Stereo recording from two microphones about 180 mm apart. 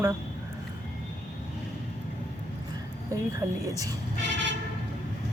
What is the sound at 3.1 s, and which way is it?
Speech, 20° right (ahead or behind).